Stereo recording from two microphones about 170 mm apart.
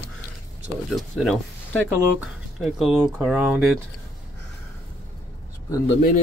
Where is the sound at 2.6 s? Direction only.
Centre (ahead or behind).